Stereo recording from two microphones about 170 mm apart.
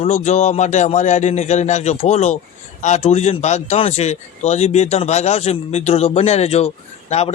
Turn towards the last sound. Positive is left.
turn(degrees=40)  # may be behind; listen again after turning